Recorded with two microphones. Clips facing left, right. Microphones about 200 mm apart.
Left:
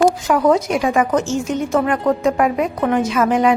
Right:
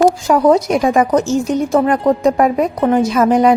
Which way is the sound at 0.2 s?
35° right (ahead or behind).